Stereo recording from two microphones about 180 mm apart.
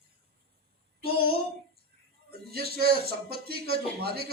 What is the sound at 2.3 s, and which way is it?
Speech, 60° right (ahead or behind).